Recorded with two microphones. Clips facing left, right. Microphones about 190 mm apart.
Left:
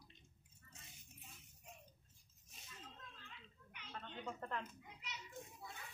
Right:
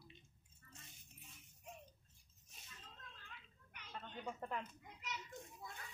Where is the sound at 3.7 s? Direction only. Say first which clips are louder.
Even; 45° right (ahead or behind).